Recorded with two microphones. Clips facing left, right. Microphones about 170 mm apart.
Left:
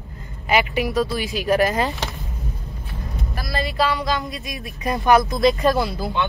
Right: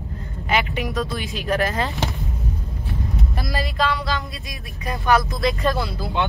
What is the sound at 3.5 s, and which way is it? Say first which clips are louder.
Speech: left 2 dB; 5° left (ahead or behind).